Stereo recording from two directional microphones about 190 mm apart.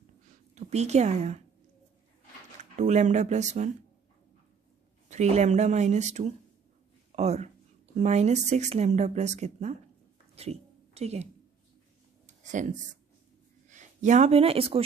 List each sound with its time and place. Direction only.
0.6 s a woman's voice: 35° right (ahead or behind)
2.7 s a woman's voice: 40° right (ahead or behind)
5.1 s a woman's voice: 35° right (ahead or behind)
10.3 s a sound: 35° right (ahead or behind)
12.3 s a sound: 40° right (ahead or behind)
13.7 s speech: 40° right (ahead or behind)